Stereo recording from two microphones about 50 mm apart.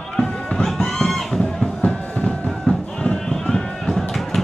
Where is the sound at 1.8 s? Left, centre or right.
Left.